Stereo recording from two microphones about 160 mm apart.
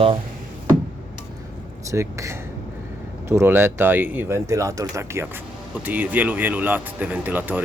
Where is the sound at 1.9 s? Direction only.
20° right (ahead or behind).